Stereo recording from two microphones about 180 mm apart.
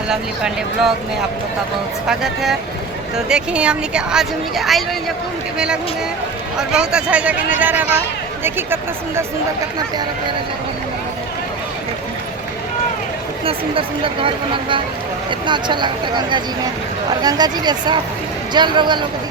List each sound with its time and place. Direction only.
0.1 s a woman's voice: 5° right (ahead or behind)
2.0 s a woman's voice: centre (ahead or behind)
13.4 s speech: 30° right (ahead or behind)